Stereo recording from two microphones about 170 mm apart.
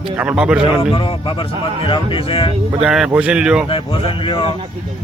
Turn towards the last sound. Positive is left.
turn(degrees=30)  # may be behind; listen again after turning